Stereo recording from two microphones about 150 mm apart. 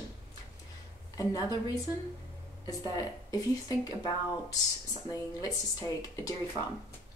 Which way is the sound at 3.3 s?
25° left (ahead or behind).